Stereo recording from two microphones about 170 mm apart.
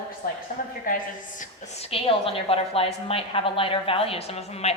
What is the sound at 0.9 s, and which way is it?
Speech, 55° left (ahead or behind).